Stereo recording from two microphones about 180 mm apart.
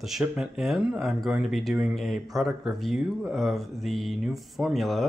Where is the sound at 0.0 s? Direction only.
Centre (ahead or behind).